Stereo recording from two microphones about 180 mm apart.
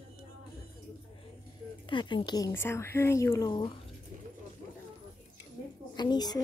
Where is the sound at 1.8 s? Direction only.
25° left (ahead or behind).